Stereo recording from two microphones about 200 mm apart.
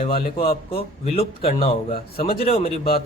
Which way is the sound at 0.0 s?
25° left (ahead or behind).